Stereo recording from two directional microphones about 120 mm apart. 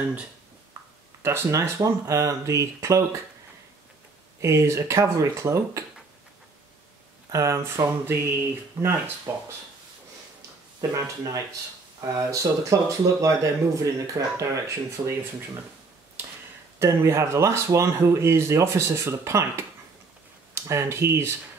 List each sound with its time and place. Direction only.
1.2 s speech: 20° right (ahead or behind)
4.4 s speech: 25° right (ahead or behind)
7.2 s speech: 25° right (ahead or behind)
10.8 s speech: 30° right (ahead or behind)
16.8 s speech: 25° right (ahead or behind)